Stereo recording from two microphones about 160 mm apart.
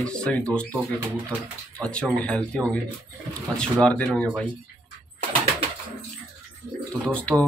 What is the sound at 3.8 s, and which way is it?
Speech, 5° left (ahead or behind).